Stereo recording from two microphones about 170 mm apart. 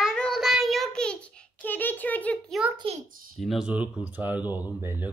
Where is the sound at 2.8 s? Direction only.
35° right (ahead or behind).